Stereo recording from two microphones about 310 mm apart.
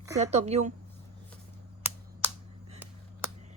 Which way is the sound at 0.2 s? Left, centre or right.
Right.